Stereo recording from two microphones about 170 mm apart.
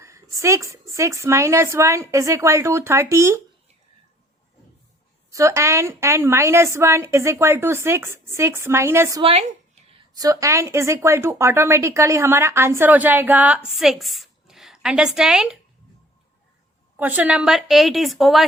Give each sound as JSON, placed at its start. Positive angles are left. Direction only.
{"t": 0.3, "sound": "a woman's voice", "side_deg": -20}
{"t": 5.3, "sound": "a woman's voice", "side_deg": -15}
{"t": 17.0, "sound": "a woman's voice", "side_deg": -10}